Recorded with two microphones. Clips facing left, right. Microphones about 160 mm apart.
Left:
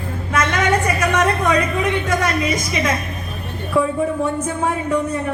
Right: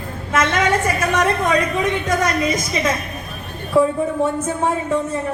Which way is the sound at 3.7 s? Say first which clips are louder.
Right 2 dB; 25° right (ahead or behind).